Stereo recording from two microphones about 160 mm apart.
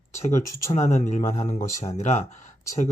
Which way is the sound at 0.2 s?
45° left (ahead or behind).